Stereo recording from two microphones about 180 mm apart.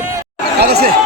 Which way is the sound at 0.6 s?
60° right (ahead or behind).